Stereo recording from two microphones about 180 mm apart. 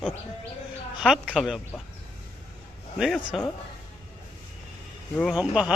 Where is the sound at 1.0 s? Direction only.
Centre (ahead or behind).